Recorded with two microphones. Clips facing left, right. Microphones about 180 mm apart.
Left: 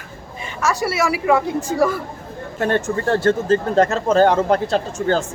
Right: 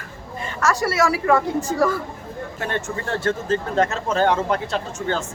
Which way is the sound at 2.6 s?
35° left (ahead or behind).